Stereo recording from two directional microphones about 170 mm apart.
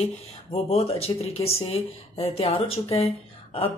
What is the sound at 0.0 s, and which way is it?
Speech, 35° left (ahead or behind).